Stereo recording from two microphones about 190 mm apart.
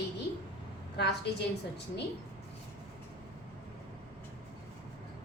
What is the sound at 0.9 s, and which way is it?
Speech, 60° left (ahead or behind).